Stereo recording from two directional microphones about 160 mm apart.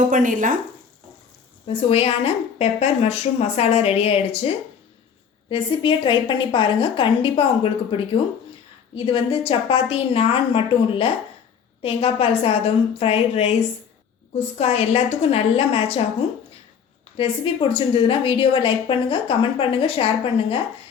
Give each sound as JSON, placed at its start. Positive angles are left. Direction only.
{"t": 0.1, "sound": "speech", "side_deg": -55}
{"t": 1.6, "sound": "a woman's voice", "side_deg": 35}
{"t": 17.2, "sound": "a woman's voice", "side_deg": 35}